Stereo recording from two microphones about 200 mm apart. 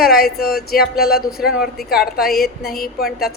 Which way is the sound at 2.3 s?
50° left (ahead or behind).